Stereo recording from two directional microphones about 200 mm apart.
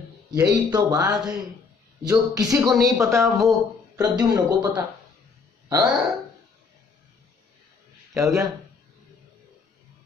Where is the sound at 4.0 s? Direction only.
20° right (ahead or behind).